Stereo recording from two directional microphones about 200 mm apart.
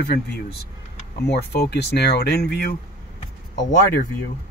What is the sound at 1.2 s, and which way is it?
Speech, 55° left (ahead or behind).